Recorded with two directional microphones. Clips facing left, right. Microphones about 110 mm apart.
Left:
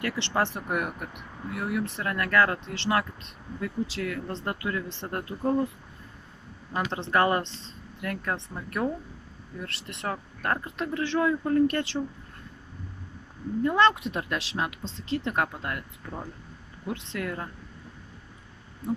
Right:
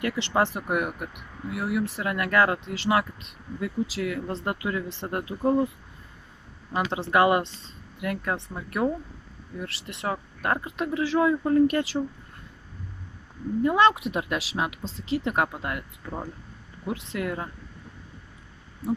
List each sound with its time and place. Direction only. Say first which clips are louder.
0.0 s speech: right 3 dB; 15° right (ahead or behind)
6.7 s speech: right 2 dB; 10° right (ahead or behind)
13.7 s speech: right 2 dB; 10° right (ahead or behind)